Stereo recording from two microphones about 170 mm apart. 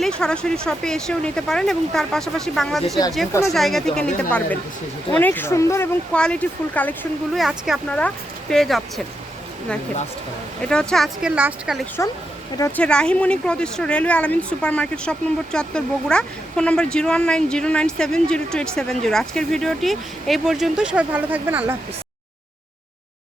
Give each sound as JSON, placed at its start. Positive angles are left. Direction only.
{"t": 0.0, "sound": "a woman's voice", "side_deg": 5}
{"t": 6.1, "sound": "a woman's voice", "side_deg": 5}
{"t": 7.3, "sound": "speech", "side_deg": 0}
{"t": 10.6, "sound": "speech", "side_deg": 5}
{"t": 12.0, "sound": "a woman's voice", "side_deg": 15}
{"t": 12.8, "sound": "a woman's voice", "side_deg": 5}